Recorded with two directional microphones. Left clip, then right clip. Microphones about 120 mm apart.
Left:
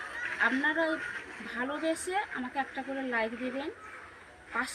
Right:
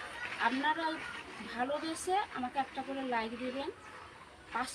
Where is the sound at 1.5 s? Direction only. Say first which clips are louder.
Left 3 dB; 20° right (ahead or behind).